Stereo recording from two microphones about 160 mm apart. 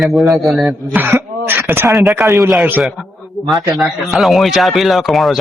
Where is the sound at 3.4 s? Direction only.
Centre (ahead or behind).